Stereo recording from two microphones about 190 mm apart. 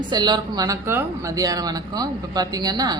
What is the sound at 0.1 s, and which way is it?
Speech, 20° right (ahead or behind).